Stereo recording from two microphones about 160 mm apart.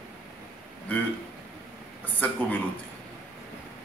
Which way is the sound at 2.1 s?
10° left (ahead or behind).